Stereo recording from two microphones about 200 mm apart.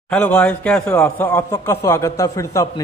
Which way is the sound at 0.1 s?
5° left (ahead or behind).